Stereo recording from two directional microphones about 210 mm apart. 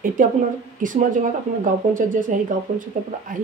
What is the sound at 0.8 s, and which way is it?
Speech, 40° right (ahead or behind).